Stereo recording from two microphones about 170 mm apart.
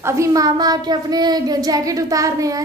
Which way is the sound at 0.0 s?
15° right (ahead or behind).